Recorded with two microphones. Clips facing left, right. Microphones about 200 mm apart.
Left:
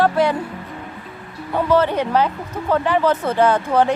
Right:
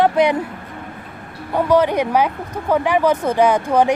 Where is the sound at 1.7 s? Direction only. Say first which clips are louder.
Right 2 dB; 15° right (ahead or behind).